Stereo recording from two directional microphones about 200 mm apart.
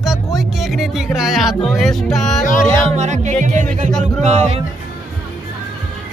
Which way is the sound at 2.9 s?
35° right (ahead or behind).